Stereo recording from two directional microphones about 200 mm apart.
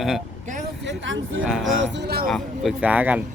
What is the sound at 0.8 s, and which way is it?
Vehicle, 65° right (ahead or behind).